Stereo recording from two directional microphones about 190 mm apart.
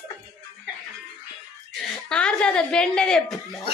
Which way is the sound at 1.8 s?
5° left (ahead or behind).